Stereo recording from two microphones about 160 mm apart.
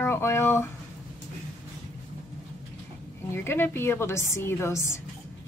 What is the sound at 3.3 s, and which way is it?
A woman's voice, 15° left (ahead or behind).